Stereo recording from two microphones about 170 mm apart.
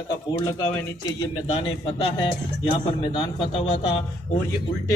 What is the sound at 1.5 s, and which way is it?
A man's voice, 30° left (ahead or behind).